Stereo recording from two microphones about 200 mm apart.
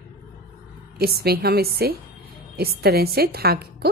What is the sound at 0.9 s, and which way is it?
A woman's voice, 50° right (ahead or behind).